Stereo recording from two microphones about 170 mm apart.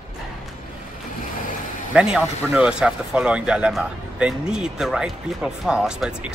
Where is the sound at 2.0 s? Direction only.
5° right (ahead or behind).